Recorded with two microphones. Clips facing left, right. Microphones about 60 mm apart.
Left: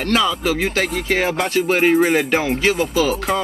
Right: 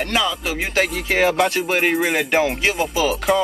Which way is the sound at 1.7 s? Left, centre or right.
Centre.